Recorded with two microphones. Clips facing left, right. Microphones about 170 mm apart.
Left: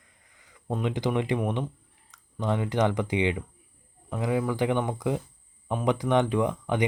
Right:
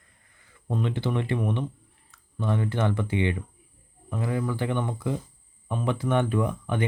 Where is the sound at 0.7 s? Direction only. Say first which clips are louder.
Left 1 dB; 15° left (ahead or behind).